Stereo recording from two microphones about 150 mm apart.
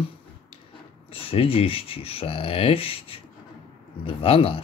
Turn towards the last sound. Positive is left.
turn(degrees=40)  # may be behind; listen again after turning